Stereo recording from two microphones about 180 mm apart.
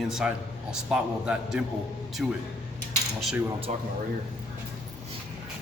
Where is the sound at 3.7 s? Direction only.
35° right (ahead or behind).